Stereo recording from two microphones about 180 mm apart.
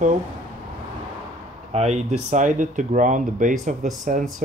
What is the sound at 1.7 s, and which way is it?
Speech, 35° right (ahead or behind).